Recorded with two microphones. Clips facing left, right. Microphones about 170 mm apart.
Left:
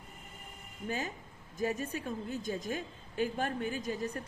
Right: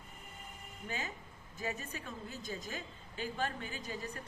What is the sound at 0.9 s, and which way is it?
A woman's voice, 50° left (ahead or behind).